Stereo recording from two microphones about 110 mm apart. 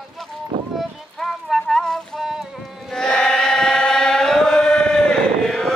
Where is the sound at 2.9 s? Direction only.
5° left (ahead or behind).